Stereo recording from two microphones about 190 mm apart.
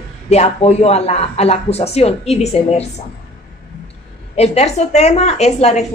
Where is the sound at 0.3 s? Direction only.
35° left (ahead or behind).